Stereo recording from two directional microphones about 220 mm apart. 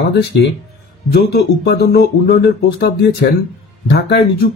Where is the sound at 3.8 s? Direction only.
45° left (ahead or behind).